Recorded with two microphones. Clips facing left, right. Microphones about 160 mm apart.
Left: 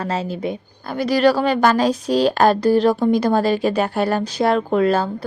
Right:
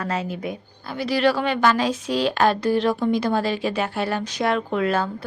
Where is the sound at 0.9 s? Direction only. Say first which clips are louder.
Left 5 dB; 40° left (ahead or behind).